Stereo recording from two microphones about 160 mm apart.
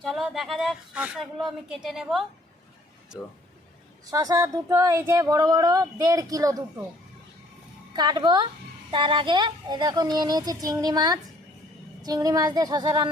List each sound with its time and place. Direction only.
0.0 s speech: centre (ahead or behind)
4.1 s speech: 20° right (ahead or behind)
7.9 s speech: 25° right (ahead or behind)